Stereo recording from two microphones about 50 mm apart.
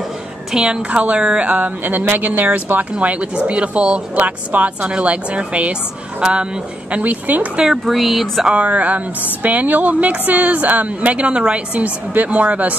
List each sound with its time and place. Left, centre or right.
0.5 s a woman's voice: centre
0.8 s speech: right
6.9 s speech: right
7.6 s speech: centre
8.5 s speech: right